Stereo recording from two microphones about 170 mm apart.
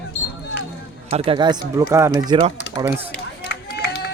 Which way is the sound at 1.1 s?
35° right (ahead or behind).